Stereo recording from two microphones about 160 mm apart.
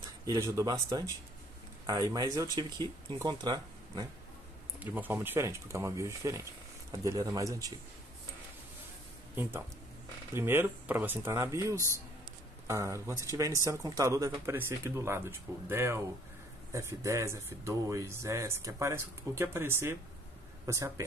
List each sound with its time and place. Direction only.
0.2 s speech: 20° right (ahead or behind)
4.7 s speech: 10° right (ahead or behind)
9.3 s speech: 15° right (ahead or behind)